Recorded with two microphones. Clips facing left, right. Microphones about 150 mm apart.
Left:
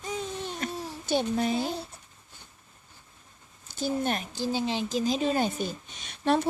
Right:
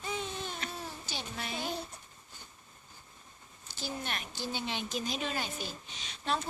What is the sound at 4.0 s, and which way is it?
A child's voice, 40° left (ahead or behind).